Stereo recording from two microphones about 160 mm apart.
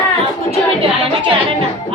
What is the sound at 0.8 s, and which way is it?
Music, 35° right (ahead or behind).